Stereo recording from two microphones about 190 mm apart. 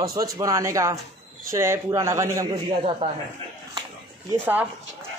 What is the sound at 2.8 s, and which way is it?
Speech, 30° right (ahead or behind).